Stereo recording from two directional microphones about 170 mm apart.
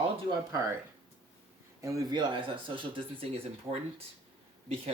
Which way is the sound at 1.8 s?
20° right (ahead or behind).